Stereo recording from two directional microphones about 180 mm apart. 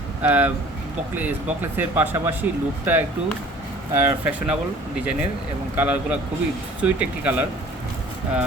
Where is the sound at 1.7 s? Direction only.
10° right (ahead or behind).